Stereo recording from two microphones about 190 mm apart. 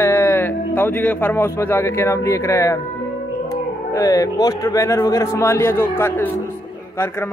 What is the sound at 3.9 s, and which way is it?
Speech, 20° left (ahead or behind).